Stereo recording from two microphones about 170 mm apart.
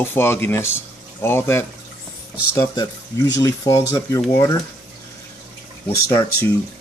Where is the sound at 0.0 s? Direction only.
15° left (ahead or behind).